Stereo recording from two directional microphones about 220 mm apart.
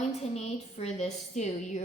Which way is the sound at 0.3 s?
30° left (ahead or behind).